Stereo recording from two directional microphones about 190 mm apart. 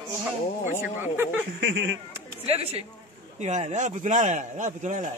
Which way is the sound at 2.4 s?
30° right (ahead or behind).